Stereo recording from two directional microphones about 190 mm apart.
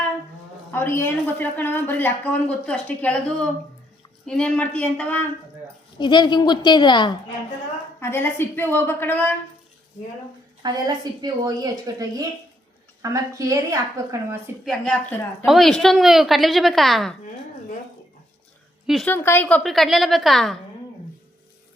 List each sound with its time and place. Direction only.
0.7 s a woman's voice: 10° left (ahead or behind)
6.0 s a woman's voice: 25° left (ahead or behind)
7.9 s a woman's voice: 10° left (ahead or behind)
10.6 s a woman's voice: 20° right (ahead or behind)
14.6 s a woman's voice: centre (ahead or behind)
19.0 s a woman's voice: 10° left (ahead or behind)